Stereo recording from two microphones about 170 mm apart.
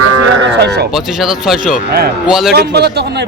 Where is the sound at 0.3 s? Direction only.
90° right.